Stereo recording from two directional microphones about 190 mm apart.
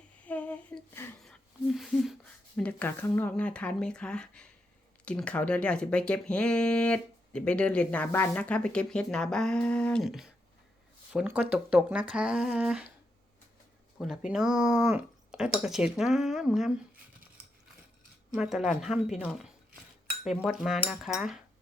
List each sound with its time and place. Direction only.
0.3 s a sound: 5° left (ahead or behind)
2.6 s speech: 10° left (ahead or behind)
14.3 s speech: 5° right (ahead or behind)
18.3 s speech: 5° right (ahead or behind)